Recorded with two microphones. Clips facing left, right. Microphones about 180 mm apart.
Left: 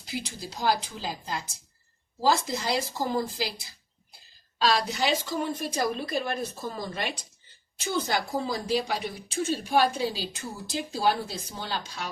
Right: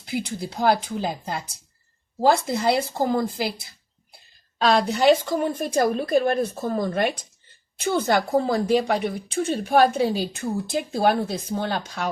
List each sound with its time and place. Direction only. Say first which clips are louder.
0.0 s a woman's voice: right 7 dB; 55° right (ahead or behind)
4.5 s a woman's voice: right 6 dB; 55° right (ahead or behind)